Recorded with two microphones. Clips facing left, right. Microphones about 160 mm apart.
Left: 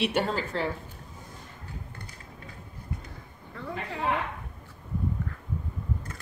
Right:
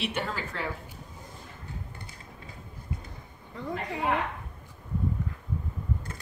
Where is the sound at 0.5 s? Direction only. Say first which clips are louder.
Left 5 dB; 30° left (ahead or behind).